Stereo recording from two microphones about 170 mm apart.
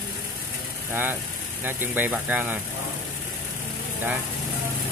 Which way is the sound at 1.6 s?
10° right (ahead or behind).